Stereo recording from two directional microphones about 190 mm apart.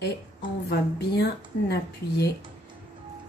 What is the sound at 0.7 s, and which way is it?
Speech, 60° left (ahead or behind).